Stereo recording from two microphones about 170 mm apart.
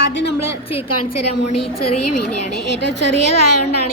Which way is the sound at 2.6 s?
90° left.